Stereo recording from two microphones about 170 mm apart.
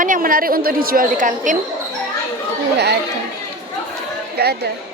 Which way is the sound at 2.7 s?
80° right.